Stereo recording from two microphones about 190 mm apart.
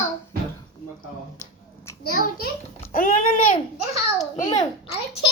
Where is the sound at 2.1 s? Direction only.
50° left (ahead or behind).